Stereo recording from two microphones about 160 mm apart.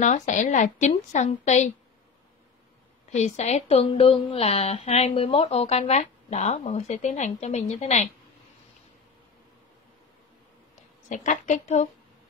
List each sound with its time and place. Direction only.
0.0 s speech: 50° left (ahead or behind)
3.1 s speech: 45° left (ahead or behind)
11.1 s speech: 50° left (ahead or behind)